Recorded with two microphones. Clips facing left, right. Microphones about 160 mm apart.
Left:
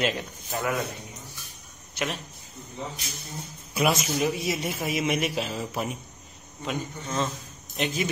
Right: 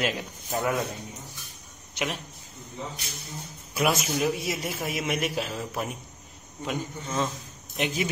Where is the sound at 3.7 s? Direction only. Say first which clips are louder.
Left 1 dB; centre (ahead or behind).